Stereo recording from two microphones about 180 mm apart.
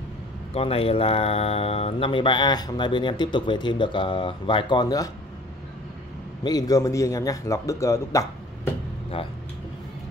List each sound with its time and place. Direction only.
0.6 s speech: 30° left (ahead or behind)
6.4 s a man's voice: 20° left (ahead or behind)
9.1 s speech: 30° left (ahead or behind)